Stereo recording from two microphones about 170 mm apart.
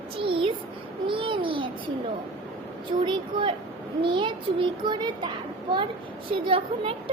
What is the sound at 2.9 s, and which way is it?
A child's voice, 30° right (ahead or behind).